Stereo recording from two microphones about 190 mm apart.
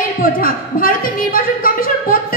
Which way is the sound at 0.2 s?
50° left (ahead or behind).